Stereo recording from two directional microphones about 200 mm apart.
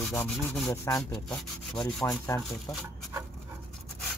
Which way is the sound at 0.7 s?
15° left (ahead or behind).